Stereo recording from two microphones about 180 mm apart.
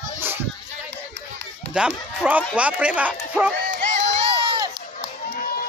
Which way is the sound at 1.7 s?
10° right (ahead or behind).